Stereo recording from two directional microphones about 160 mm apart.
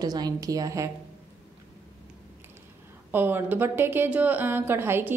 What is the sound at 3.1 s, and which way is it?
A woman's voice, 15° right (ahead or behind).